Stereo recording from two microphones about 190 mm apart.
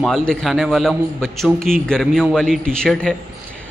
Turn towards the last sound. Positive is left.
turn(degrees=5)  # may be behind; listen again after turning